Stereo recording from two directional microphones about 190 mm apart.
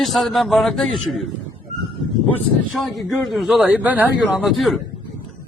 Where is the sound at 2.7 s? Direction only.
Centre (ahead or behind).